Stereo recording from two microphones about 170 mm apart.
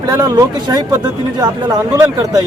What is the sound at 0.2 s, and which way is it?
Speech, 20° right (ahead or behind).